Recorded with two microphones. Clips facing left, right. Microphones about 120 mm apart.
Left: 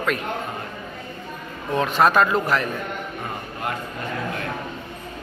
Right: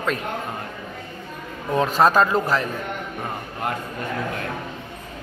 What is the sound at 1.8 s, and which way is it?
Speech, 35° right (ahead or behind).